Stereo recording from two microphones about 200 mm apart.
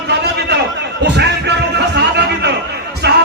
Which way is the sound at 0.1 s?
55° right (ahead or behind).